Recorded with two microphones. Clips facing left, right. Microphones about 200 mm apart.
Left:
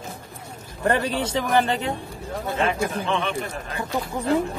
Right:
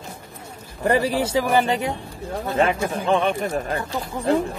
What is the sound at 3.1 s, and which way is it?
Speech, 45° right (ahead or behind).